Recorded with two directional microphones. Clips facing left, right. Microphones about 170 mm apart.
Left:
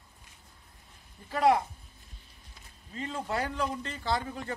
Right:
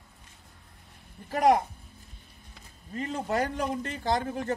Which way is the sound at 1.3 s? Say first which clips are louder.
Right 2 dB; 45° right (ahead or behind).